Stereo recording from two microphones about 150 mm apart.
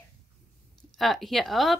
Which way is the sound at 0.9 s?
Centre (ahead or behind).